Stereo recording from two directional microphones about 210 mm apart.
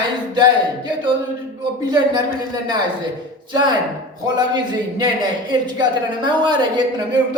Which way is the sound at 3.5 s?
20° right (ahead or behind).